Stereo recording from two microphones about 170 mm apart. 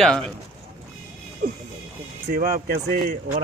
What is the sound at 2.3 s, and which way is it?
Speech, 55° right (ahead or behind).